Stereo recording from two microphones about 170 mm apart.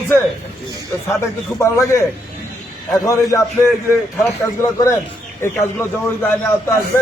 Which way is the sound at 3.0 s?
20° left (ahead or behind).